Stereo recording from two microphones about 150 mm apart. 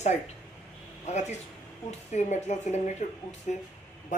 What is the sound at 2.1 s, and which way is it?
A woman's voice, 50° left (ahead or behind).